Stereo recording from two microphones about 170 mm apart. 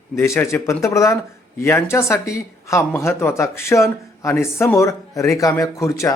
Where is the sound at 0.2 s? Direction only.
15° left (ahead or behind).